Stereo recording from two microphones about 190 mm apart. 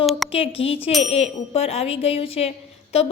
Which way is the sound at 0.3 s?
30° left (ahead or behind).